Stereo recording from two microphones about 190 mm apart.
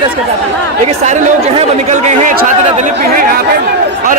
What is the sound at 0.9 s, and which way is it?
A man's voice, 35° right (ahead or behind).